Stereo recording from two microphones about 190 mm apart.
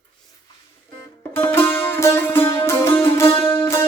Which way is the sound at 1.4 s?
10° left (ahead or behind).